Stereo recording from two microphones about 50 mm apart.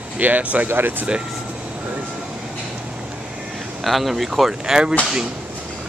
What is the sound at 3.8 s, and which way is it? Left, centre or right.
Speech, centre.